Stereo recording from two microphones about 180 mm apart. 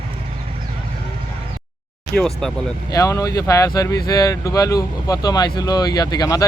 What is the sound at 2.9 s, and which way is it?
Speech, 20° left (ahead or behind).